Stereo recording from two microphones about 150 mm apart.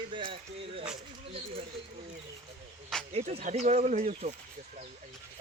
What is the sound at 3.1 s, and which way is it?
Speech, 45° right (ahead or behind).